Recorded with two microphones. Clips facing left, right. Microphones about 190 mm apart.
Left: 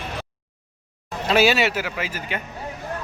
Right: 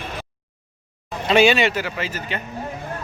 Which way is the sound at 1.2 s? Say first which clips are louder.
Right 2 dB; 5° left (ahead or behind).